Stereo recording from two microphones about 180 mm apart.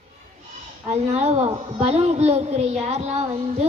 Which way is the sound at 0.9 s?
35° right (ahead or behind).